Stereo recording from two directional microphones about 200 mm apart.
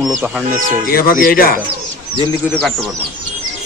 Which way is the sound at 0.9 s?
45° left (ahead or behind).